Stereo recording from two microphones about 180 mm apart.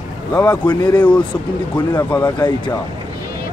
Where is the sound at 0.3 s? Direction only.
20° left (ahead or behind).